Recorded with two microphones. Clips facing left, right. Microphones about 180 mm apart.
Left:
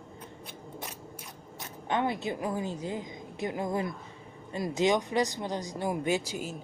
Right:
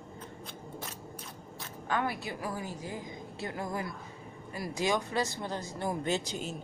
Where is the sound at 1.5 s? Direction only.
20° left (ahead or behind).